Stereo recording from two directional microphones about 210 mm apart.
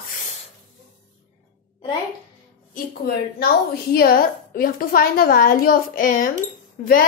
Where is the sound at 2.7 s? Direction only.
45° left (ahead or behind).